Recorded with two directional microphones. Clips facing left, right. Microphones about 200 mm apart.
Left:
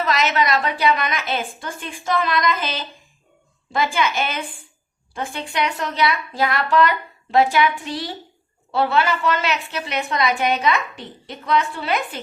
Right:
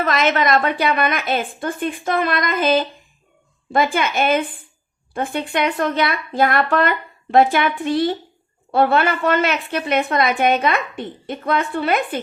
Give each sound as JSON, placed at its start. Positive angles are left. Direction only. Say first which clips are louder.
{"t": 0.0, "sound": "a woman's voice", "louder": "right 2 dB", "side_deg": -50}